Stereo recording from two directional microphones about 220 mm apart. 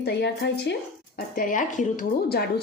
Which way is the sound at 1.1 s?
40° left (ahead or behind).